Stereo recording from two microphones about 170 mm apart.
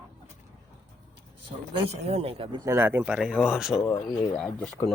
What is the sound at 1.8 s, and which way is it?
Speech, 35° right (ahead or behind).